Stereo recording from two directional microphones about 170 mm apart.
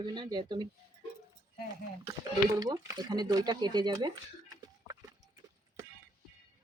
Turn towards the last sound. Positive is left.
turn(degrees=-20)  # may be behind; listen again after turning